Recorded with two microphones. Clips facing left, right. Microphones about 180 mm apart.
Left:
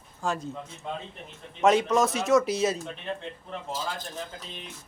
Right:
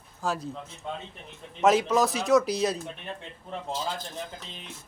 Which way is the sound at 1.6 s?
Centre (ahead or behind).